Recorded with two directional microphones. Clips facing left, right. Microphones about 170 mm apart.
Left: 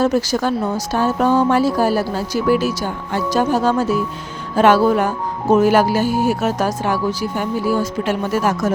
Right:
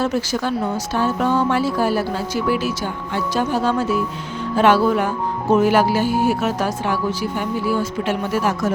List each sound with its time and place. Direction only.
0.0 s speech: 40° left (ahead or behind)